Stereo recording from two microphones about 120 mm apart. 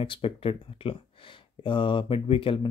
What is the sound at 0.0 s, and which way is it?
Speech, 50° left (ahead or behind).